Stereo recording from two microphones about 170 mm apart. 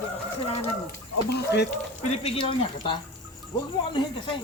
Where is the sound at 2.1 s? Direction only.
35° left (ahead or behind).